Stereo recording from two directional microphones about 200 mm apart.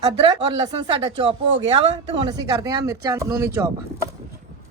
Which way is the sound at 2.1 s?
20° right (ahead or behind).